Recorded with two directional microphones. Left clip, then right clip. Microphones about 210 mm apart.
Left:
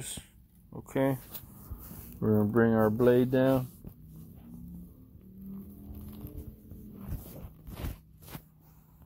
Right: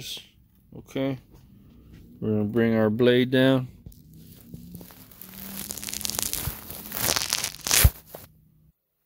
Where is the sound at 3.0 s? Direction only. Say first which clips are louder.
Right 5 dB; 30° right (ahead or behind).